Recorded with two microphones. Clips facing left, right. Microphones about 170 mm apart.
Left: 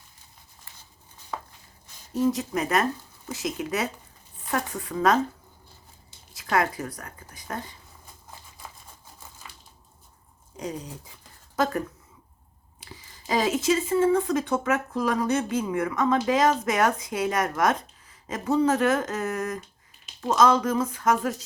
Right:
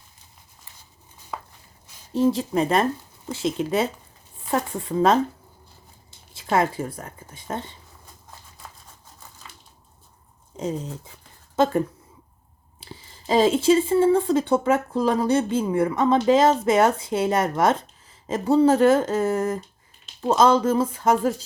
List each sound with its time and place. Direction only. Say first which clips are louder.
1.3 s walk: even; 5° right (ahead or behind)
2.1 s speech: right 4 dB; 30° right (ahead or behind)
6.3 s speech: right 3 dB; 25° right (ahead or behind)
8.6 s a sound: even; 5° left (ahead or behind)
10.6 s speech: right 5 dB; 25° right (ahead or behind)
12.8 s speech: right 5 dB; 30° right (ahead or behind)